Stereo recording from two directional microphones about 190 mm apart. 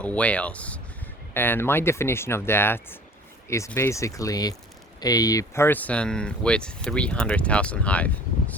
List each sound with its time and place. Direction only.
0.0 s speech: 5° left (ahead or behind)